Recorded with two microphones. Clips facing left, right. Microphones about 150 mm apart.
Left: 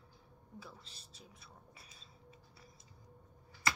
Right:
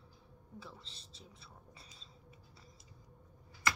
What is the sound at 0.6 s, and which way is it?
Speech, 10° left (ahead or behind).